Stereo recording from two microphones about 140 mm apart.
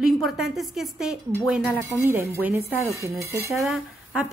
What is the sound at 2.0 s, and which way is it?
Speech, 15° right (ahead or behind).